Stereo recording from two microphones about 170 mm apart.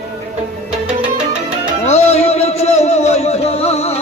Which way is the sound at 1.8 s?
40° left (ahead or behind).